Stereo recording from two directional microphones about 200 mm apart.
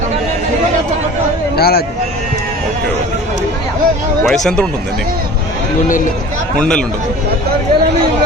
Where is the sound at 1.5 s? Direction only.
50° left (ahead or behind).